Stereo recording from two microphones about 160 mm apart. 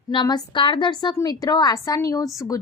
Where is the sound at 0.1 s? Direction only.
30° left (ahead or behind).